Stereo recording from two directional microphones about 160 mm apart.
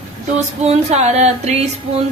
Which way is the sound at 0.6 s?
45° right (ahead or behind).